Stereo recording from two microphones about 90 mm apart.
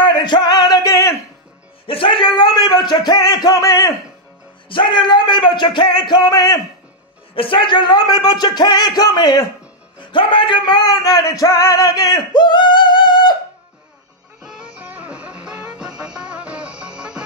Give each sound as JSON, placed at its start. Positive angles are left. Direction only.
{"t": 0.0, "sound": "music", "side_deg": 60}
{"t": 1.9, "sound": "music", "side_deg": 80}
{"t": 4.6, "sound": "speech", "side_deg": 70}
{"t": 7.3, "sound": "music", "side_deg": 75}
{"t": 9.9, "sound": "music", "side_deg": 70}
{"t": 14.4, "sound": "music", "side_deg": -10}